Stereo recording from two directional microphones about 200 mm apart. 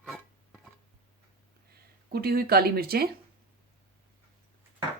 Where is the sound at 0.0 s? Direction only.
Centre (ahead or behind).